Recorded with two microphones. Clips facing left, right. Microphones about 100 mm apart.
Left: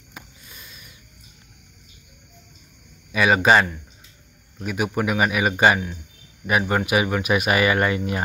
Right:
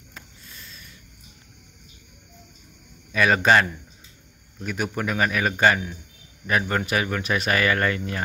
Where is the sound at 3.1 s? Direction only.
5° left (ahead or behind).